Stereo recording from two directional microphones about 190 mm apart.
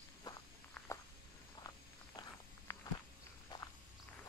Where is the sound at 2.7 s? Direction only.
15° left (ahead or behind).